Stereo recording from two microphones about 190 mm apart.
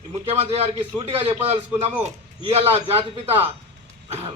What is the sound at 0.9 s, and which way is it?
A man's voice, 30° right (ahead or behind).